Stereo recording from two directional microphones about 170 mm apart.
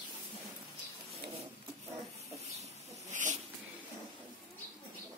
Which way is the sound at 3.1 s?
45° right (ahead or behind).